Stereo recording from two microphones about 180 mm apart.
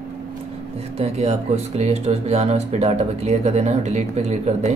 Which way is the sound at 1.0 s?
35° right (ahead or behind).